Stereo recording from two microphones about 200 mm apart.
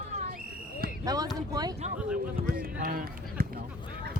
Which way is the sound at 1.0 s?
20° right (ahead or behind).